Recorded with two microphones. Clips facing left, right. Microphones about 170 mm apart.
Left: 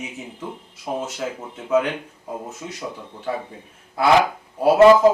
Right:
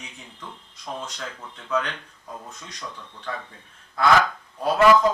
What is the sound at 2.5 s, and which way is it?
A man's voice, 10° left (ahead or behind).